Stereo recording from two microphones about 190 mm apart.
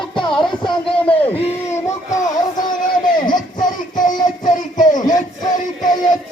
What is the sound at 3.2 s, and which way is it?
Music, 20° left (ahead or behind).